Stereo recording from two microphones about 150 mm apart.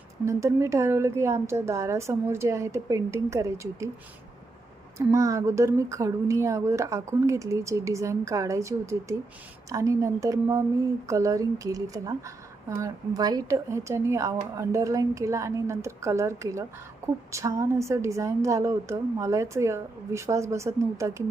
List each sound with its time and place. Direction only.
0.3 s a woman's voice: 20° right (ahead or behind)
4.9 s a woman's voice: 20° right (ahead or behind)